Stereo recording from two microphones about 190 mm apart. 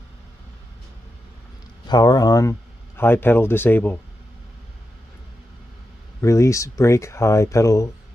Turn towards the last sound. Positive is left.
turn(degrees=15)  # may be behind; listen again after turning